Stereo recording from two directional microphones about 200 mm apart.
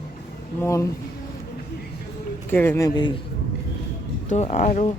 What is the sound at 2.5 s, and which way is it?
Speech, 10° left (ahead or behind).